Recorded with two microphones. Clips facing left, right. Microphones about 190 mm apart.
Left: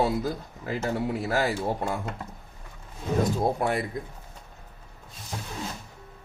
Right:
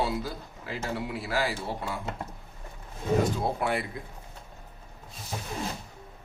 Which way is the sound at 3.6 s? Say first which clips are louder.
Left 2 dB; 45° left (ahead or behind).